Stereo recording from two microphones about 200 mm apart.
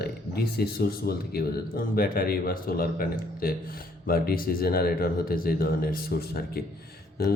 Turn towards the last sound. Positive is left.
turn(degrees=50)  # may be behind; listen again after turning